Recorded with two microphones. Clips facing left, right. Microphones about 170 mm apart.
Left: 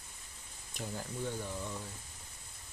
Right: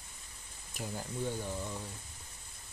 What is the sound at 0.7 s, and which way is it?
Speech, 10° right (ahead or behind).